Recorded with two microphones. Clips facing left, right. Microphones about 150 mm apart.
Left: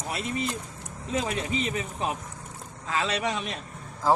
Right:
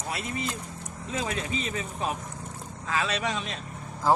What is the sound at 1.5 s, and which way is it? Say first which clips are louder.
A man's voice: left 2 dB; 20° left (ahead or behind).